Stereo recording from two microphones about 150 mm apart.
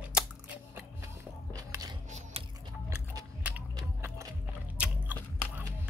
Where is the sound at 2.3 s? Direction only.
40° right (ahead or behind).